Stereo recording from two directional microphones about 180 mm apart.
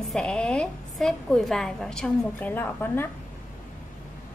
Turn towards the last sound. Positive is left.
turn(degrees=10)  # may be behind; listen again after turning